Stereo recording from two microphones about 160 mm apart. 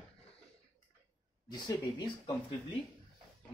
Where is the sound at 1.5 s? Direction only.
25° left (ahead or behind).